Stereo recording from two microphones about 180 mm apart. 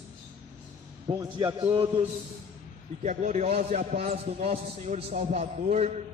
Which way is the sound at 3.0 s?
40° right (ahead or behind).